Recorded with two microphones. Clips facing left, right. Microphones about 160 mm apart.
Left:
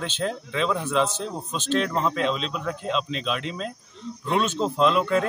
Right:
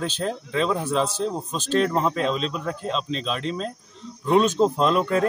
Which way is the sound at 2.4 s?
40° right (ahead or behind).